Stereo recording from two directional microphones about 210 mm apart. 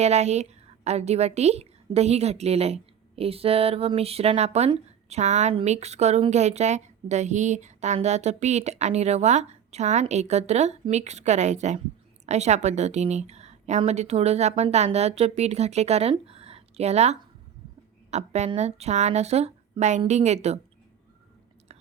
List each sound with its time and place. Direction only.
0.0 s a woman's voice: 30° right (ahead or behind)